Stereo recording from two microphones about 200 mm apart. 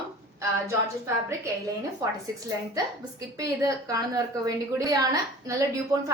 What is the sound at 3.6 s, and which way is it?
A woman's voice, 15° right (ahead or behind).